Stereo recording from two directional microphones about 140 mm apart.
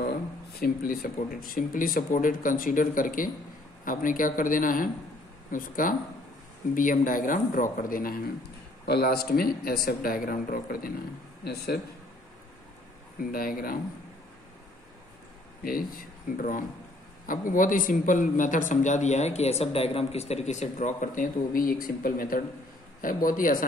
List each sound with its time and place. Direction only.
0.6 s a man's voice: 90° left
13.2 s a man's voice: 90° left
16.3 s speech: 80° left